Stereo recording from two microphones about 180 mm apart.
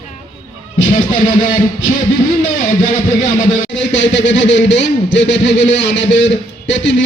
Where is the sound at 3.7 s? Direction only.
90° left.